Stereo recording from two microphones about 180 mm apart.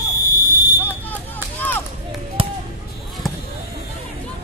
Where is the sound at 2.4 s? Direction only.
30° right (ahead or behind).